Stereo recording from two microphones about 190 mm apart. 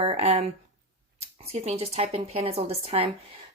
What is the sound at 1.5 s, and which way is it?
Speech, 35° right (ahead or behind).